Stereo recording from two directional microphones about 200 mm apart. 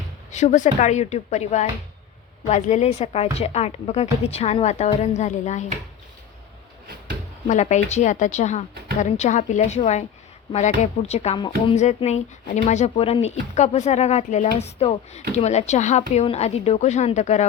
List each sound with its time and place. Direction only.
0.3 s speech: 35° left (ahead or behind)
7.4 s speech: 35° left (ahead or behind)
11.1 s speech: 30° left (ahead or behind)